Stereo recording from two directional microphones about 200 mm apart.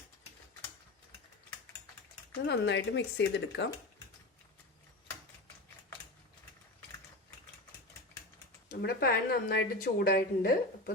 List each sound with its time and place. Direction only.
2.5 s speech: 60° left (ahead or behind)
8.7 s a woman's voice: 55° left (ahead or behind)